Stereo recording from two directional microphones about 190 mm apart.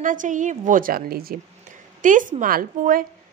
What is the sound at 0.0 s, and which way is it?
A woman's voice, 45° right (ahead or behind).